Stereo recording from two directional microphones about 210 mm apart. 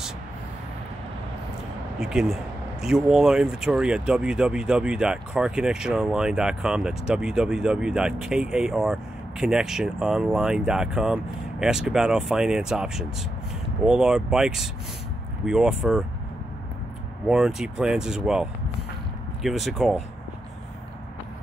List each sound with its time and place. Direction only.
2.0 s speech: centre (ahead or behind)
17.3 s speech: 5° right (ahead or behind)